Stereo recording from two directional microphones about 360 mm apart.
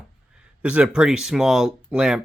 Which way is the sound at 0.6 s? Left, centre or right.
Centre.